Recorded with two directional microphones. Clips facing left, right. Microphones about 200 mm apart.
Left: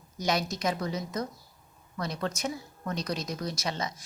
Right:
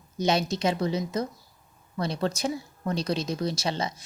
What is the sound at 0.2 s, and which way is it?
Speech, 25° right (ahead or behind).